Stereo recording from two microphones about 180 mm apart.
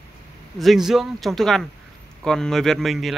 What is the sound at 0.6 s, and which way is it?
Speech, centre (ahead or behind).